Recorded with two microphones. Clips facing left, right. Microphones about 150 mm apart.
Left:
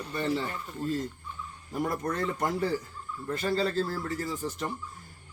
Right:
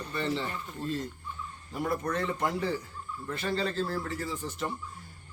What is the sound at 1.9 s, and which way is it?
A man's voice, 40° left (ahead or behind).